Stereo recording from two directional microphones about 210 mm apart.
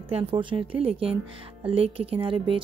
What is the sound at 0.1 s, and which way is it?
Speech, 25° right (ahead or behind).